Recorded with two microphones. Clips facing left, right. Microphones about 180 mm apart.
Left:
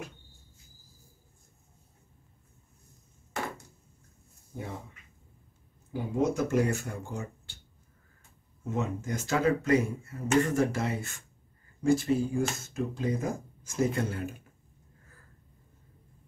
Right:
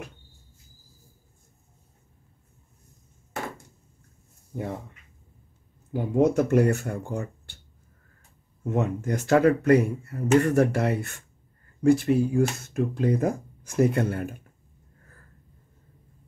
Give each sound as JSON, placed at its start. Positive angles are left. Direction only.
{"t": 6.1, "sound": "speech", "side_deg": -60}
{"t": 8.6, "sound": "speech", "side_deg": -60}